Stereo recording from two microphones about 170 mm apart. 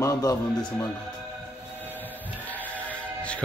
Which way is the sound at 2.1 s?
10° left (ahead or behind).